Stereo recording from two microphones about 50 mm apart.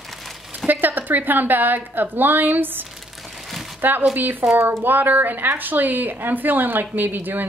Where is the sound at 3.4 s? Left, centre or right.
Centre.